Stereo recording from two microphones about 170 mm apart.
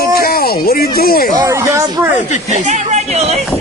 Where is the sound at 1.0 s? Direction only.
60° left (ahead or behind).